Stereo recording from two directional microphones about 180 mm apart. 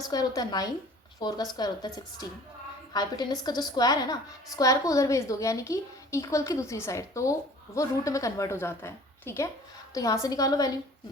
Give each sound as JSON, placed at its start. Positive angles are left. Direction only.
{"t": 0.0, "sound": "a woman's voice", "side_deg": 20}